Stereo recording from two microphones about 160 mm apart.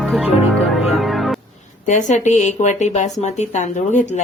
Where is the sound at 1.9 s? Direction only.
50° left (ahead or behind).